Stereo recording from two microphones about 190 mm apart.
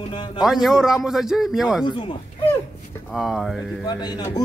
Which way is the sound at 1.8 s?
25° left (ahead or behind).